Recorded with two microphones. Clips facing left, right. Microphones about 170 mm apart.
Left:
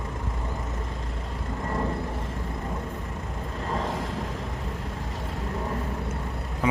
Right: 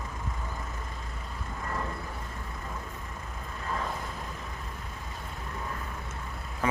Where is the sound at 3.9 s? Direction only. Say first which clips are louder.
Left 6 dB; 90° left.